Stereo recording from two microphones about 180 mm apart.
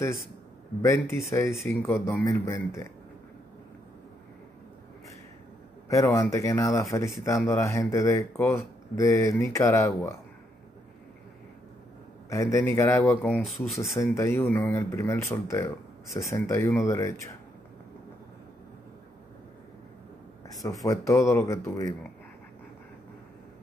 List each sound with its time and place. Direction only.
0.8 s speech: 15° left (ahead or behind)
5.9 s speech: 15° left (ahead or behind)
12.3 s speech: 15° left (ahead or behind)
14.1 s speech: 15° left (ahead or behind)
20.4 s speech: 20° left (ahead or behind)